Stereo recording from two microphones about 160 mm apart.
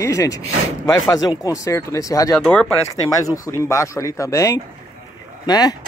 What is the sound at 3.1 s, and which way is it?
A man's voice, 20° left (ahead or behind).